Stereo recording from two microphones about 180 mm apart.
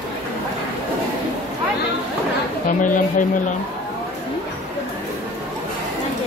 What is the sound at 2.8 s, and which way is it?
Speech, 45° left (ahead or behind).